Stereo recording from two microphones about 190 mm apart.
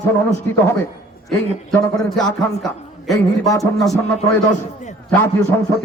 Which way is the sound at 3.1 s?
15° left (ahead or behind).